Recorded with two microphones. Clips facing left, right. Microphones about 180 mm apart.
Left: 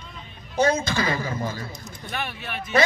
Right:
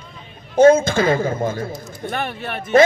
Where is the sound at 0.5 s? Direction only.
50° right (ahead or behind).